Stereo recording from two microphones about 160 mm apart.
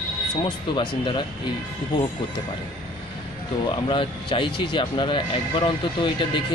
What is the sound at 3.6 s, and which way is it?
Speech, 30° left (ahead or behind).